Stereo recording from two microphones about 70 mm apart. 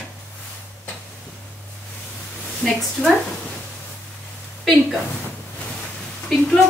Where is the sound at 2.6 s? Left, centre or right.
Centre.